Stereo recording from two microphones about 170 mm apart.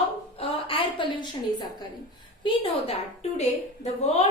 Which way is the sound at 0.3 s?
30° left (ahead or behind).